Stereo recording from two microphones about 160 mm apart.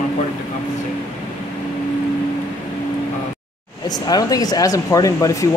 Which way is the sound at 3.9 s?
25° left (ahead or behind).